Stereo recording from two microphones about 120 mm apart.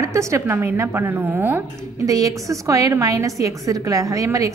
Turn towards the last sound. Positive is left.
turn(degrees=-25)  # may be behind; listen again after turning